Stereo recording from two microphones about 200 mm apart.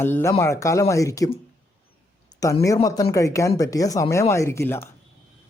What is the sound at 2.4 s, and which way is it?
Speech, 15° left (ahead or behind).